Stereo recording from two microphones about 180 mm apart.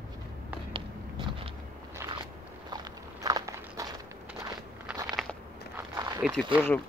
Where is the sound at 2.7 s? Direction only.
20° right (ahead or behind).